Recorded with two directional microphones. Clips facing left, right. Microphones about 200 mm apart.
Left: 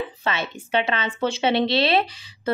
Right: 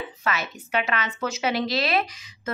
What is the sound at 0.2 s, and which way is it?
A woman's voice, 30° left (ahead or behind).